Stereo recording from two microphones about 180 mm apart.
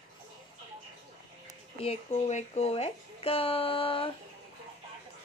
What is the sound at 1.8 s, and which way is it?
Speech, 35° left (ahead or behind).